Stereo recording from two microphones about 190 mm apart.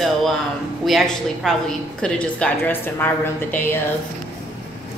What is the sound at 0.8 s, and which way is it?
A woman's voice, centre (ahead or behind).